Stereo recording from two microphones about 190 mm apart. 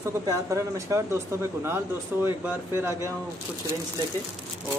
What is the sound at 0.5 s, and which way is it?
Speech, 15° right (ahead or behind).